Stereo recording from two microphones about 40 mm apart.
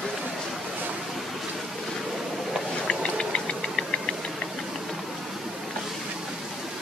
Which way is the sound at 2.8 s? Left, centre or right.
Left.